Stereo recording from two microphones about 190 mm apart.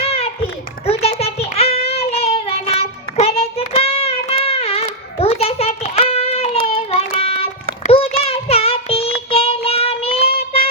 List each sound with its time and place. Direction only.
0.0 s children playing: 30° left (ahead or behind)
0.9 s child singing: 30° left (ahead or behind)
4.4 s a sound: 30° left (ahead or behind)
6.7 s child singing: 30° left (ahead or behind)